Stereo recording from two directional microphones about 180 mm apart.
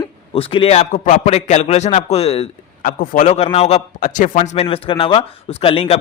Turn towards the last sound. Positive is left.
turn(degrees=30)  # may be behind; listen again after turning